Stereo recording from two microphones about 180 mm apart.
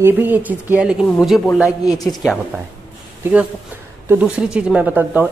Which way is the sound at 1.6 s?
20° left (ahead or behind).